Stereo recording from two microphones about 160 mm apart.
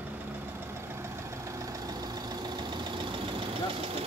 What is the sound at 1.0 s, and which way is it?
Vehicle, 20° right (ahead or behind).